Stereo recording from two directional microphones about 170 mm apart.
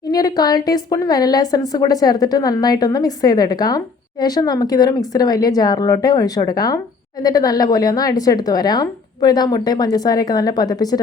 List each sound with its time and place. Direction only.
0.1 s a woman's voice: 25° left (ahead or behind)